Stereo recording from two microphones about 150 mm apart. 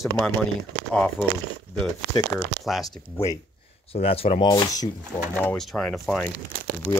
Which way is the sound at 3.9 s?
40° left (ahead or behind).